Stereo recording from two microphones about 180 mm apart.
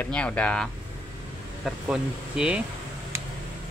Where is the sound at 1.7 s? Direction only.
5° right (ahead or behind).